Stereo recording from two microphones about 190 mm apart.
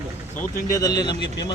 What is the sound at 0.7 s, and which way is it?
Speech, 20° left (ahead or behind).